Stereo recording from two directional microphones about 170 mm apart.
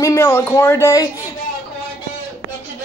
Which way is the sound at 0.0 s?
15° left (ahead or behind).